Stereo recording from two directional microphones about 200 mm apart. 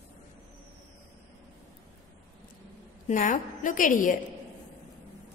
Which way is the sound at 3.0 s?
40° left (ahead or behind).